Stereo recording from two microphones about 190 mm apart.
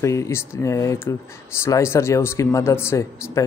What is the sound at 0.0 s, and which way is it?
Speech, 15° left (ahead or behind).